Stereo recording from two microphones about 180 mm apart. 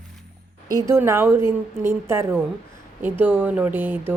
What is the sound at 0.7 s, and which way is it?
A woman's voice, 15° right (ahead or behind).